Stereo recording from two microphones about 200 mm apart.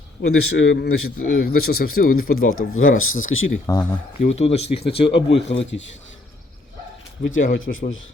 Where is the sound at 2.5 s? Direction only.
90° left.